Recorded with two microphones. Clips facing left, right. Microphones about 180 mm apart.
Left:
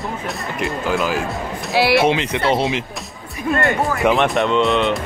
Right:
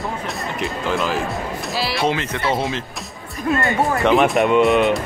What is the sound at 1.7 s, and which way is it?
Speech, 65° left (ahead or behind).